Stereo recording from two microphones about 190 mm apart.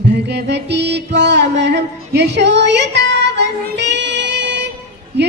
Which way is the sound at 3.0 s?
65° right (ahead or behind).